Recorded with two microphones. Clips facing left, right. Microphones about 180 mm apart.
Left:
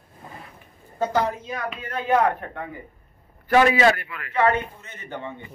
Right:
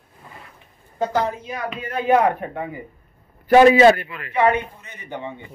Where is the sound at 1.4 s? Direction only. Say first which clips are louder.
Right 2 dB; 15° right (ahead or behind).